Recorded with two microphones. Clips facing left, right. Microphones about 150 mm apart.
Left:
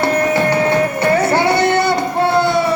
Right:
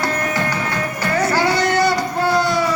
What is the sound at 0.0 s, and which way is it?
Music, 25° left (ahead or behind).